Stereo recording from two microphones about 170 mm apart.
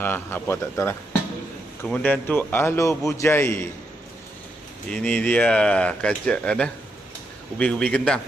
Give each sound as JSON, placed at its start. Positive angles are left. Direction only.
{"t": 0.0, "sound": "a man's voice", "side_deg": 15}
{"t": 4.9, "sound": "a man's voice", "side_deg": 10}